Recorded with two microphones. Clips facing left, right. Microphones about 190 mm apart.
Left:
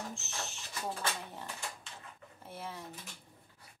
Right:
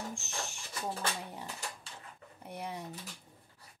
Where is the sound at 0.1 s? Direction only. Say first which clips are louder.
Right 2 dB; 15° right (ahead or behind).